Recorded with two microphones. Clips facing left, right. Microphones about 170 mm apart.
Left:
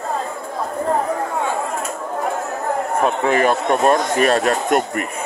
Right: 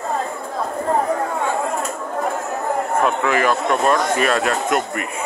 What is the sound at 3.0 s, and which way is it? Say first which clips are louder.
A man's voice: left 3 dB; 35° left (ahead or behind).